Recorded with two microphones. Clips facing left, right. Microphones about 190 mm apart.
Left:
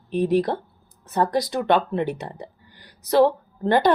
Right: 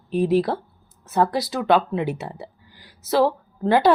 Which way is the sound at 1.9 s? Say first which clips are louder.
Even; 5° right (ahead or behind).